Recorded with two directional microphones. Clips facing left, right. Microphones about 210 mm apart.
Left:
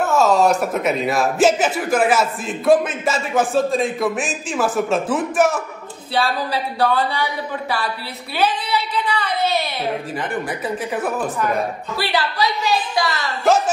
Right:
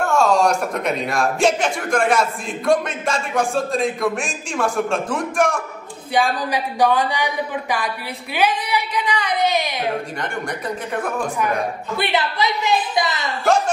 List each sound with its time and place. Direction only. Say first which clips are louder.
0.0 s a man's voice: left 1 dB; centre (ahead or behind)
6.1 s speech: right 1 dB; 15° right (ahead or behind)
8.4 s a sound: even; 15° right (ahead or behind)
11.0 s a man's voice: even; 5° left (ahead or behind)
12.0 s a woman's voice: even; 20° right (ahead or behind)